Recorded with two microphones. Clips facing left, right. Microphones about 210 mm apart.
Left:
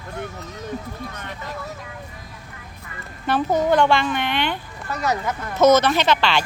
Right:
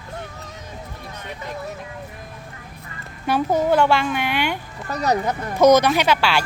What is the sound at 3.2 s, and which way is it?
Speech, 10° right (ahead or behind).